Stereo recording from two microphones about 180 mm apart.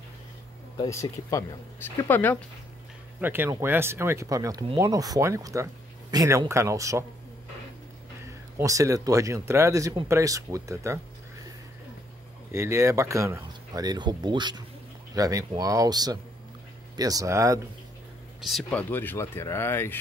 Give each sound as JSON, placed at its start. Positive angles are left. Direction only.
{"t": 0.7, "sound": "speech", "side_deg": 20}
{"t": 3.2, "sound": "speech", "side_deg": -10}
{"t": 8.3, "sound": "speech", "side_deg": -15}
{"t": 12.5, "sound": "speech", "side_deg": -15}
{"t": 18.4, "sound": "speech", "side_deg": 0}